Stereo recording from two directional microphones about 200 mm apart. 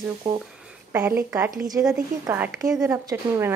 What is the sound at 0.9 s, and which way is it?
A woman's voice, 10° right (ahead or behind).